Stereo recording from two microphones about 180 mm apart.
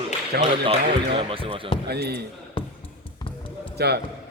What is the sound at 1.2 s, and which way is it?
Speech, 30° right (ahead or behind).